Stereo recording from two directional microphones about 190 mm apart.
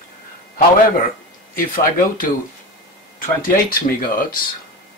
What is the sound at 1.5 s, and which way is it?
Speech, 45° left (ahead or behind).